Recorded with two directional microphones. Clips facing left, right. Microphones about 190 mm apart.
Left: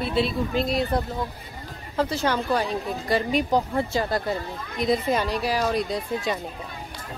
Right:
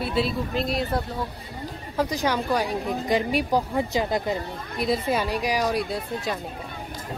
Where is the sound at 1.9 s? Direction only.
10° right (ahead or behind).